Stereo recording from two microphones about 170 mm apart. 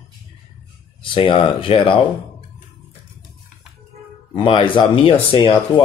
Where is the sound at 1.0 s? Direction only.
30° left (ahead or behind).